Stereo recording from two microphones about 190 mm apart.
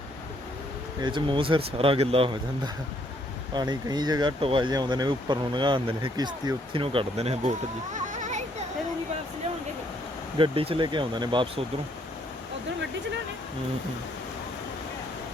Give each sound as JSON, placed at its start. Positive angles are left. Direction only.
{"t": 1.0, "sound": "speech", "side_deg": -25}
{"t": 3.5, "sound": "speech", "side_deg": -20}
{"t": 7.9, "sound": "a sound", "side_deg": -40}
{"t": 10.3, "sound": "speech", "side_deg": -30}